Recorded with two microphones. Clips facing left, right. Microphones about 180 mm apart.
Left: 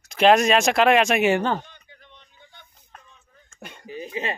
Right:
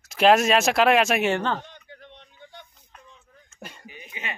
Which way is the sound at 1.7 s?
65° right (ahead or behind).